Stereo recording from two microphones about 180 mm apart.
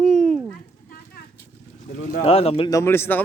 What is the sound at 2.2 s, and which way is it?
Speech, 35° left (ahead or behind).